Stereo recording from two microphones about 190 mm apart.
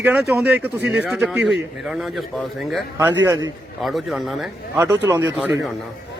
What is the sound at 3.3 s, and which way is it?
Speech, 20° right (ahead or behind).